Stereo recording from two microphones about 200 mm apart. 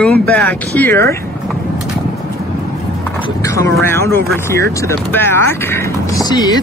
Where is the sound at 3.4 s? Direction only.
15° left (ahead or behind).